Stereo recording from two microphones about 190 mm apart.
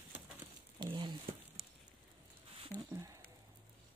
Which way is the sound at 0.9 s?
25° right (ahead or behind).